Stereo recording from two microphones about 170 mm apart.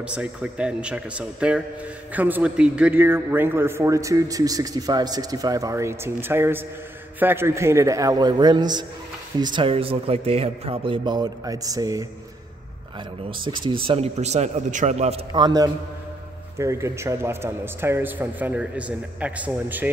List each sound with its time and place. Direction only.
0.0 s a man's voice: 5° right (ahead or behind)
13.3 s a man's voice: 30° right (ahead or behind)
15.3 s a man's voice: 25° right (ahead or behind)